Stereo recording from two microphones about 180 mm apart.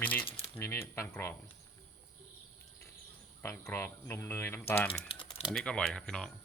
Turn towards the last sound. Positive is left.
turn(degrees=5)  # may be behind; listen again after turning